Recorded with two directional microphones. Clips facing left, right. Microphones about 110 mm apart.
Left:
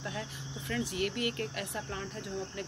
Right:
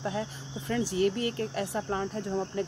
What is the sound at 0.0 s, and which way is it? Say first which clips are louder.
Speech: right 7 dB; 35° right (ahead or behind).